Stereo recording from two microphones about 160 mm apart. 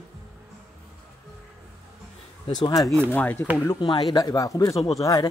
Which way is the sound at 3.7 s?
30° left (ahead or behind).